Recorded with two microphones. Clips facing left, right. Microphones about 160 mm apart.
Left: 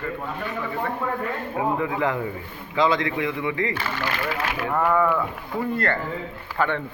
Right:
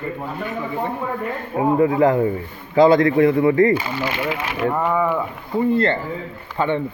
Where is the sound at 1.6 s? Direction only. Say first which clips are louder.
Right 9 dB; 35° right (ahead or behind).